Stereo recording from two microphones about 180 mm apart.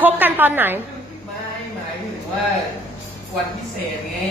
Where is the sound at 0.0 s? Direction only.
10° right (ahead or behind).